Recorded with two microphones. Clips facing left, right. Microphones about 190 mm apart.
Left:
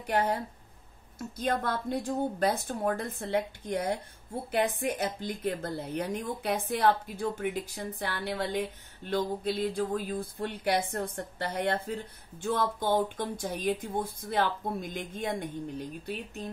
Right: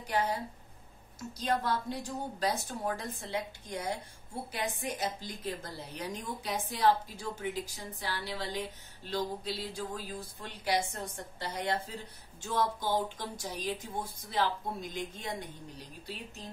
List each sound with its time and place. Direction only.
0.0 s a woman's voice: 55° left (ahead or behind)
1.4 s a woman's voice: 55° left (ahead or behind)